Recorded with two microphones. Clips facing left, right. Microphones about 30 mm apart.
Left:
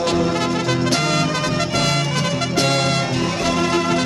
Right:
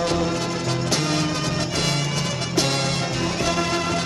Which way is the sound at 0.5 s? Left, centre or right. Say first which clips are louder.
Left 5 dB; left.